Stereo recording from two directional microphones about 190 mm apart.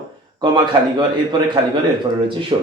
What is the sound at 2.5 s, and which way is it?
Speech, 25° right (ahead or behind).